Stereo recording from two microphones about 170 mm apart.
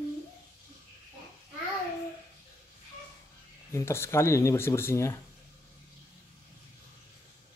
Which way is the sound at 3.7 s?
15° left (ahead or behind).